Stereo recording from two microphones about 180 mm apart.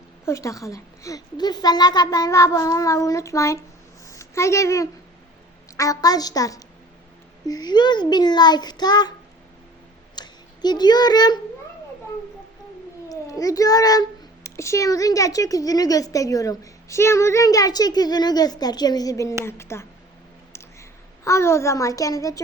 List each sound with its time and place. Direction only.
0.3 s a child's voice: 15° left (ahead or behind)
10.2 s speech: 25° left (ahead or behind)
13.1 s a child's voice: 20° left (ahead or behind)
21.2 s a child's voice: 15° left (ahead or behind)